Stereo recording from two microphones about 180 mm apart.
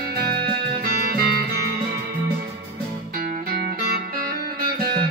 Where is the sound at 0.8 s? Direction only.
55° right (ahead or behind).